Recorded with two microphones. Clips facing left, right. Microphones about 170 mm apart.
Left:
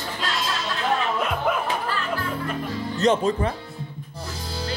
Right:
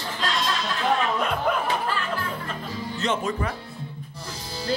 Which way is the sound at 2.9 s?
35° left (ahead or behind).